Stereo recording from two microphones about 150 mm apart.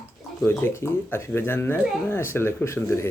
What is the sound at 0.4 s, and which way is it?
Speech, 15° left (ahead or behind).